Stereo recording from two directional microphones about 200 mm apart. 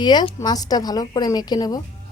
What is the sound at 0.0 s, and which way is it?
A woman's voice, 20° left (ahead or behind).